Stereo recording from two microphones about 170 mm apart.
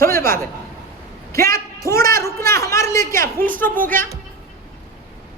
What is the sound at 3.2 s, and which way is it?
Speech, 60° right (ahead or behind).